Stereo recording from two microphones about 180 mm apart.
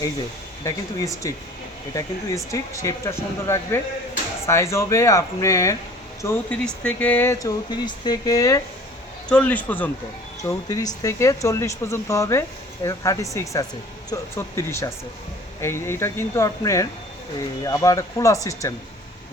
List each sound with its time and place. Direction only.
0.6 s speech: 15° left (ahead or behind)
9.3 s speech: 10° left (ahead or behind)